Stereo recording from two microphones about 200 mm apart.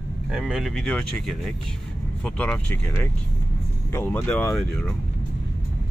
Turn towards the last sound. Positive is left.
turn(degrees=5)  # may be behind; listen again after turning